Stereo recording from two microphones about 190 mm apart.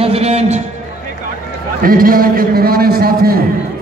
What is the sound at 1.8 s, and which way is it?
A man's voice, 50° right (ahead or behind).